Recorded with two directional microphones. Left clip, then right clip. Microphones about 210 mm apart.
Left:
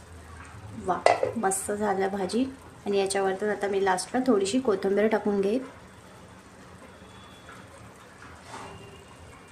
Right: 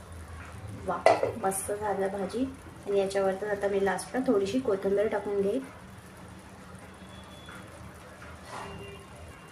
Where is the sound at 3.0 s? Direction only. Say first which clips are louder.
Left 2 dB; 40° left (ahead or behind).